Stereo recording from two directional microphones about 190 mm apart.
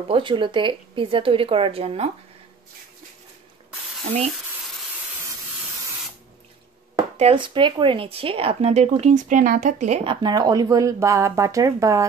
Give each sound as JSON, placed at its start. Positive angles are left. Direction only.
{"t": 0.1, "sound": "speech", "side_deg": -25}
{"t": 7.2, "sound": "speech", "side_deg": -30}
{"t": 10.2, "sound": "speech", "side_deg": -20}